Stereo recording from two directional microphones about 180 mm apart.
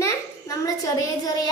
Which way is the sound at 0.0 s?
20° left (ahead or behind).